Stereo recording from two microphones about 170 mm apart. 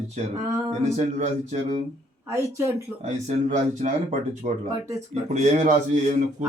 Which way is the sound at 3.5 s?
45° right (ahead or behind).